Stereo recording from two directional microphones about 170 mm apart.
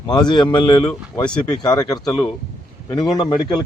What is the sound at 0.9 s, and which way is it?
Speech, 5° left (ahead or behind).